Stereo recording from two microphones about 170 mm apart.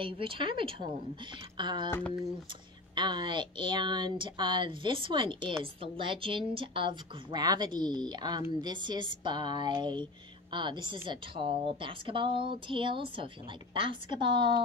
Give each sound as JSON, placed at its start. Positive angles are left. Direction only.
{"t": 0.0, "sound": "speech", "side_deg": -30}
{"t": 1.9, "sound": "speech", "side_deg": 10}
{"t": 2.9, "sound": "speech", "side_deg": -25}